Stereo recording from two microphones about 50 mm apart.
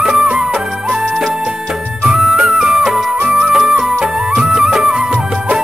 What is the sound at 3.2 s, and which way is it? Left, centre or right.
Music, right.